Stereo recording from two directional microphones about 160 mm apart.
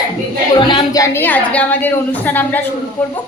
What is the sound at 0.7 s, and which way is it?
A woman's voice, 20° left (ahead or behind).